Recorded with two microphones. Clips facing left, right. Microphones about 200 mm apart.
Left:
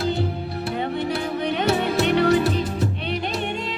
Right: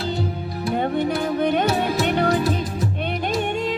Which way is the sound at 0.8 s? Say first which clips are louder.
Right 4 dB; 50° right (ahead or behind).